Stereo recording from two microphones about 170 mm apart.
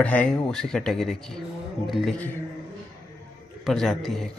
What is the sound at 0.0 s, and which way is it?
Speech, 5° left (ahead or behind).